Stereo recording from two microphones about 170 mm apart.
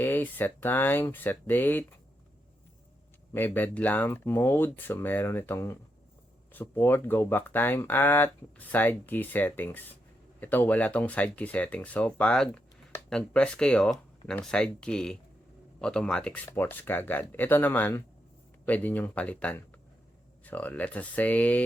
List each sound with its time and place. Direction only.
0.0 s speech: 10° left (ahead or behind)
3.3 s speech: 10° left (ahead or behind)